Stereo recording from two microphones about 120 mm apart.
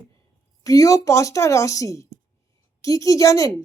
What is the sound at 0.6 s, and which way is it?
Speech, 30° left (ahead or behind).